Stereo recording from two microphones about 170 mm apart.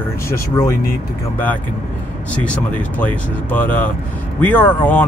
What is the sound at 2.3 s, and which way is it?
Speech, 10° left (ahead or behind).